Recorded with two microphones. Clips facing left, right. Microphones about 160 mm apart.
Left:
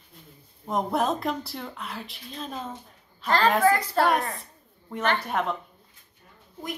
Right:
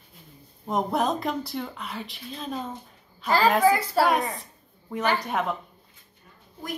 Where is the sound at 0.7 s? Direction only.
Centre (ahead or behind).